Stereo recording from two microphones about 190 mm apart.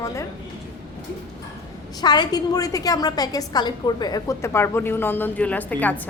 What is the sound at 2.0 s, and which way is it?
A woman's voice, 20° left (ahead or behind).